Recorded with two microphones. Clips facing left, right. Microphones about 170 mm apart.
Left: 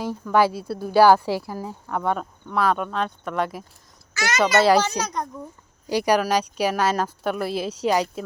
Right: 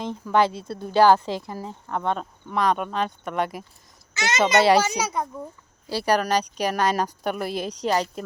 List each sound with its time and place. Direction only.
0.3 s speech: 5° left (ahead or behind)
2.7 s speech: 5° right (ahead or behind)
4.1 s a child's voice: 20° right (ahead or behind)
4.6 s speech: 5° right (ahead or behind)
5.9 s speech: 15° left (ahead or behind)